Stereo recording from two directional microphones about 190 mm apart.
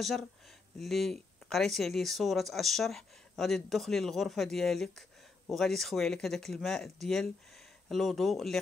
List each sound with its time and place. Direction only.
0.7 s speech: centre (ahead or behind)